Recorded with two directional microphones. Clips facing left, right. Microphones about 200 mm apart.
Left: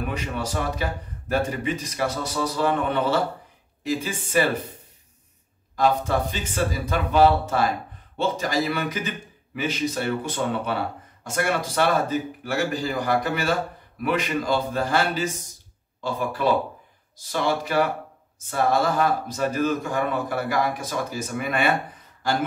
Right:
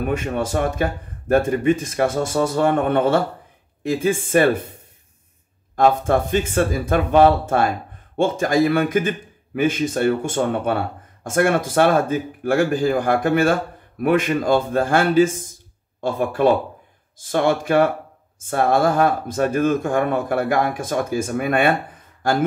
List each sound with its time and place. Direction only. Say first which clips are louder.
0.0 s speech: right 6 dB; 50° right (ahead or behind)
5.8 s speech: right 5 dB; 50° right (ahead or behind)